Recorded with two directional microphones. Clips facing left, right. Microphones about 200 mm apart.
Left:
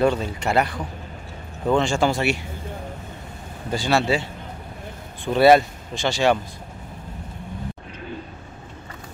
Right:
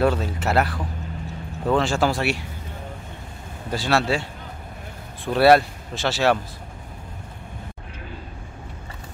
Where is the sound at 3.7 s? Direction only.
Centre (ahead or behind).